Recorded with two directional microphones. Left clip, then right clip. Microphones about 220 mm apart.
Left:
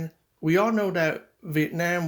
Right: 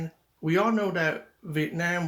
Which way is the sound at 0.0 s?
40° left (ahead or behind).